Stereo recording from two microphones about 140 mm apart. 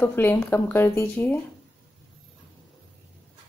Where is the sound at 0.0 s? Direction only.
15° left (ahead or behind).